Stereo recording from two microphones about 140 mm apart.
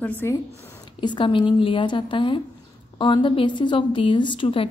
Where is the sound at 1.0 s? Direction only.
35° left (ahead or behind).